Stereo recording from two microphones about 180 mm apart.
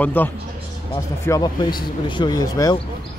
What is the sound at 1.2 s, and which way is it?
Speech, 20° left (ahead or behind).